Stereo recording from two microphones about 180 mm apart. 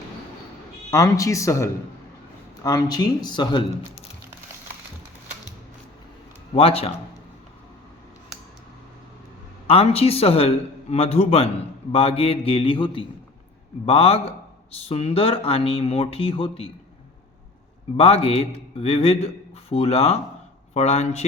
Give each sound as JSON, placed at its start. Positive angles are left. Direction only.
{"t": 0.9, "sound": "speech", "side_deg": 20}
{"t": 6.5, "sound": "speech", "side_deg": 35}
{"t": 9.6, "sound": "speech", "side_deg": 35}
{"t": 17.9, "sound": "speech", "side_deg": 35}